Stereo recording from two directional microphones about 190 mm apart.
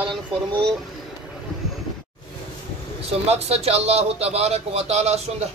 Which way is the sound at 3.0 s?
35° right (ahead or behind).